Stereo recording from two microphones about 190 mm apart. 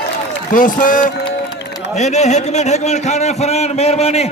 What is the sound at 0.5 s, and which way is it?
A man's voice, 45° left (ahead or behind).